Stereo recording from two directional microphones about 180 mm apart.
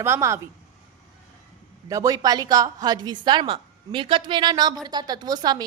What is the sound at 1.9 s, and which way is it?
A woman's voice, 20° right (ahead or behind).